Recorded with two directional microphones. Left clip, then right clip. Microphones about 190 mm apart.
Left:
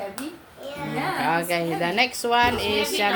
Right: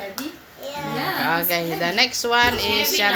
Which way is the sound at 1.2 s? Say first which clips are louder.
Right 1 dB; 10° left (ahead or behind).